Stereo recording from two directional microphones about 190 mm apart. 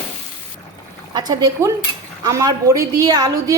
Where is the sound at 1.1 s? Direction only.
20° right (ahead or behind).